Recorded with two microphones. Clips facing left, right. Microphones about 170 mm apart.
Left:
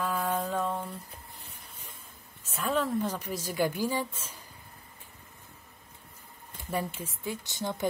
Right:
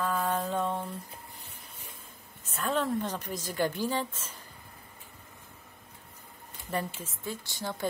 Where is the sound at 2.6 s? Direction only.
5° left (ahead or behind).